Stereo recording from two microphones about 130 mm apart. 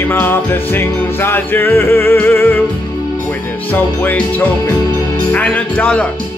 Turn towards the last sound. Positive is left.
turn(degrees=10)  # may be behind; listen again after turning